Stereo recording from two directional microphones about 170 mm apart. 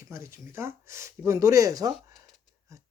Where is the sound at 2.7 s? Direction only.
20° right (ahead or behind).